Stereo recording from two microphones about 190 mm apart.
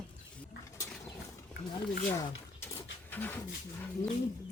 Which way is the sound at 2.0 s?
15° left (ahead or behind).